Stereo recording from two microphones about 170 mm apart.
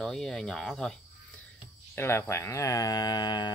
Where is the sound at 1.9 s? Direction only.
15° left (ahead or behind).